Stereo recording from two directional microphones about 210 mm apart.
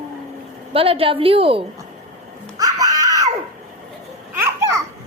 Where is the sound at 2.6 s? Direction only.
15° right (ahead or behind).